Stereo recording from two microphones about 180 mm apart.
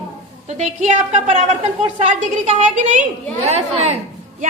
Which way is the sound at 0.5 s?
40° right (ahead or behind).